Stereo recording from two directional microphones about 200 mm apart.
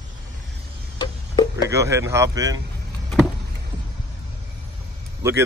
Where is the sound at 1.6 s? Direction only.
15° right (ahead or behind).